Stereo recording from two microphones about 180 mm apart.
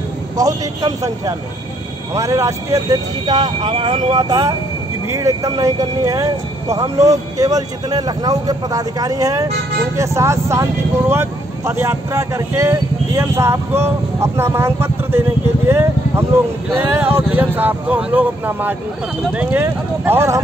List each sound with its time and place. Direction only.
0.4 s speech: 20° right (ahead or behind)